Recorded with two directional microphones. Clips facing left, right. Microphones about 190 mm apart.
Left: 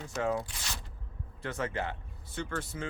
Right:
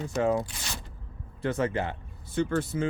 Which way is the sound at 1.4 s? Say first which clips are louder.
Right 7 dB; 20° right (ahead or behind).